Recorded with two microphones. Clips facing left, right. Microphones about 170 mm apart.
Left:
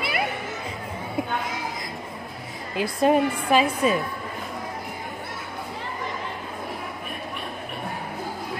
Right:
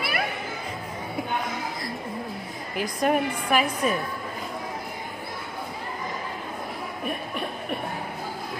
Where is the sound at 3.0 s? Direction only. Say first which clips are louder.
Left 4 dB; 25° left (ahead or behind).